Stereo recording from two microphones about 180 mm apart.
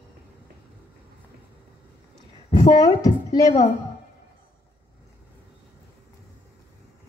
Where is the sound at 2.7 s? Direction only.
20° left (ahead or behind).